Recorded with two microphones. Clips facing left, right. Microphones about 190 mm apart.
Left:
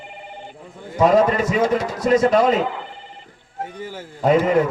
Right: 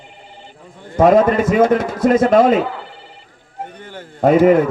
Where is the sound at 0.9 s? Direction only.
55° right (ahead or behind).